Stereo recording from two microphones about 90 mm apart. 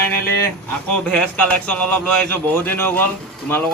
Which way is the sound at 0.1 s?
30° left (ahead or behind).